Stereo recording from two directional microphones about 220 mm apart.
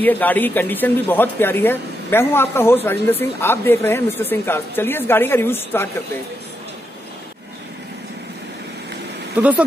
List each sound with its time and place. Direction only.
0.0 s speech: 10° left (ahead or behind)